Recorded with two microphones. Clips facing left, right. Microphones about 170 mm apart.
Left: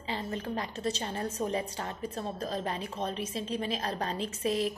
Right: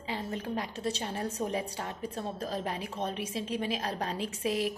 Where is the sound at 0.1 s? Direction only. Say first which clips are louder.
Even; 5° right (ahead or behind).